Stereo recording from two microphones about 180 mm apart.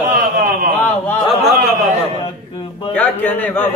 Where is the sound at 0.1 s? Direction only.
55° right (ahead or behind).